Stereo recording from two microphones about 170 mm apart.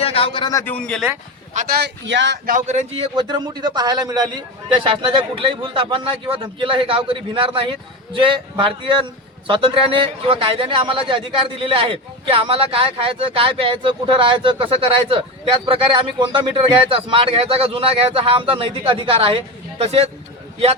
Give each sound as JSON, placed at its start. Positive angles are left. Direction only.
{"t": 0.0, "sound": "a man's voice", "side_deg": 35}
{"t": 0.6, "sound": "speech", "side_deg": 5}
{"t": 1.7, "sound": "speech", "side_deg": -80}
{"t": 2.5, "sound": "a man's voice", "side_deg": -45}